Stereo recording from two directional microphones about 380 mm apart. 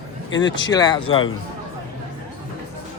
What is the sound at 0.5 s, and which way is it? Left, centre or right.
Speech, centre.